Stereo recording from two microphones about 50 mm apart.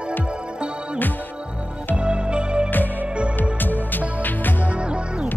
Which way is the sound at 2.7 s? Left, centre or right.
Left.